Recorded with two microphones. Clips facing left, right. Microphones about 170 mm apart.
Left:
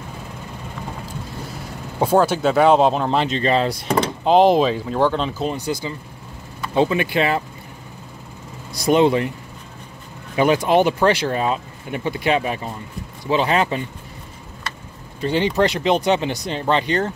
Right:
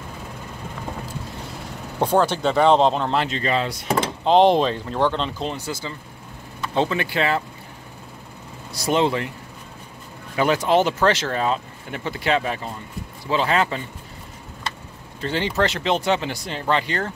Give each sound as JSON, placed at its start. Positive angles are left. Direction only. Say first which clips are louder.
{"t": 2.0, "sound": "speech", "louder": "left 3 dB", "side_deg": 10}
{"t": 3.2, "sound": "speech", "louder": "left 3 dB", "side_deg": 20}
{"t": 3.4, "sound": "speech", "louder": "left 4 dB", "side_deg": 35}
{"t": 4.2, "sound": "speech", "louder": "left 1 dB", "side_deg": 5}
{"t": 8.7, "sound": "speech", "louder": "left 5 dB", "side_deg": 15}
{"t": 10.3, "sound": "speech", "louder": "left 3 dB", "side_deg": 15}
{"t": 15.1, "sound": "speech", "louder": "left 4 dB", "side_deg": 15}